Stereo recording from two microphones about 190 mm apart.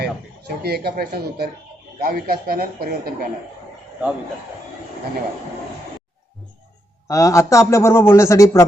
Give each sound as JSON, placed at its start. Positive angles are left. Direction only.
{"t": 0.0, "sound": "speech", "side_deg": -55}
{"t": 7.1, "sound": "a man's voice", "side_deg": 15}